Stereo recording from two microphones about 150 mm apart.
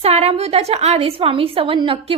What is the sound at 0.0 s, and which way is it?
A woman's voice, 45° right (ahead or behind).